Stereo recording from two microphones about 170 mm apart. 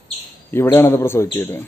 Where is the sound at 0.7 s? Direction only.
15° left (ahead or behind).